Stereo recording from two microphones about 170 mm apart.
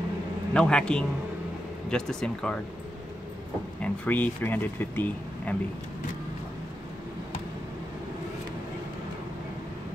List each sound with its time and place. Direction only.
0.5 s speech: 5° left (ahead or behind)
3.8 s speech: 10° left (ahead or behind)